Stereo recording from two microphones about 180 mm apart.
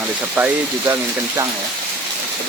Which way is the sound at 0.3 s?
10° right (ahead or behind).